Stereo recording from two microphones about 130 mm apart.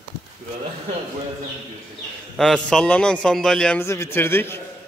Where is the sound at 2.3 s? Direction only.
5° left (ahead or behind).